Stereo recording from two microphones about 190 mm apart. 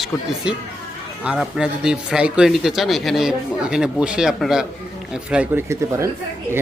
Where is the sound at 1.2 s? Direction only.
5° right (ahead or behind).